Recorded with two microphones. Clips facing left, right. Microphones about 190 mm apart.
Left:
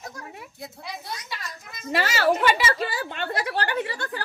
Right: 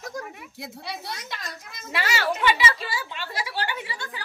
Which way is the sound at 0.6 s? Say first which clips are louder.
Right 3 dB; 75° right (ahead or behind).